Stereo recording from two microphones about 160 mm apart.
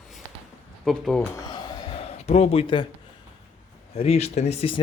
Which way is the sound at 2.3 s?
40° left (ahead or behind).